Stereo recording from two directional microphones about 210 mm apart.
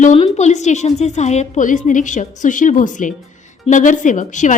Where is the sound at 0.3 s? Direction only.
35° left (ahead or behind).